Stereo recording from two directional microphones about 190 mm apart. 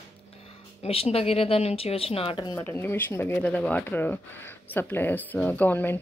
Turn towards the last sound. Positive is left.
turn(degrees=10)  # may be behind; listen again after turning